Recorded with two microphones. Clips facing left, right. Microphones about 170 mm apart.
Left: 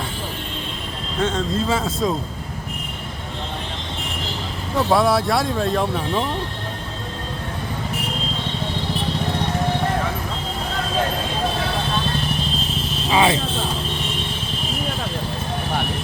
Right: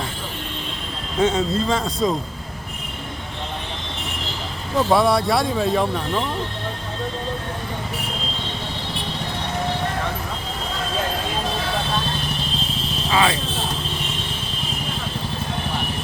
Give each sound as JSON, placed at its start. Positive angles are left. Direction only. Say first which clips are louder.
{"t": 1.2, "sound": "speech", "louder": "right 3 dB", "side_deg": -10}
{"t": 1.5, "sound": "speech", "louder": "even", "side_deg": 5}
{"t": 4.8, "sound": "speech", "louder": "even", "side_deg": 0}
{"t": 13.1, "sound": "vehicle", "louder": "left 2 dB", "side_deg": 20}